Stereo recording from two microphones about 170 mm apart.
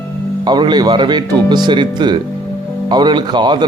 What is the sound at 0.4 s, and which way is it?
Speech, 25° right (ahead or behind).